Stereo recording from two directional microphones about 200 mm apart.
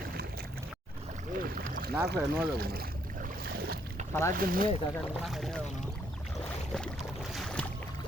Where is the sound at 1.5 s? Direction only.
45° right (ahead or behind).